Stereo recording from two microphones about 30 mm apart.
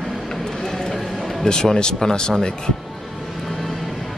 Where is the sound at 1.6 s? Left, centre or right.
Left.